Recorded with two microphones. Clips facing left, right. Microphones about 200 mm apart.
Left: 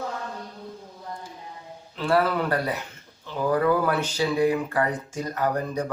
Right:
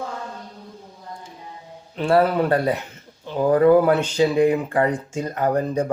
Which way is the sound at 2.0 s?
25° right (ahead or behind).